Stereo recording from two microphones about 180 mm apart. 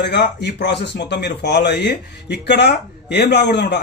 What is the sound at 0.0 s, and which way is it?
A man's voice, 70° left (ahead or behind).